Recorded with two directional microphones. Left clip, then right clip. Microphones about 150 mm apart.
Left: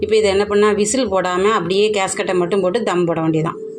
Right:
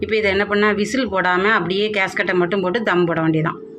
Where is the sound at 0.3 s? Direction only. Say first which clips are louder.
Left 3 dB; 15° left (ahead or behind).